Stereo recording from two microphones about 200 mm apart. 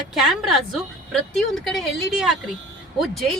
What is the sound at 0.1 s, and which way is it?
Speech, centre (ahead or behind).